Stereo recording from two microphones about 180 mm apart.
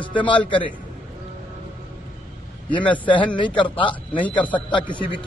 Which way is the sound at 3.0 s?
25° left (ahead or behind).